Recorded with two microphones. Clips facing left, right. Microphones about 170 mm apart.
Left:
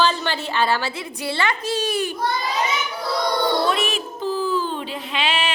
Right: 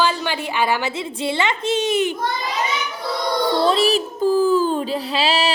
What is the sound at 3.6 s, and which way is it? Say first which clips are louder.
Child singing: right 5 dB; 30° right (ahead or behind).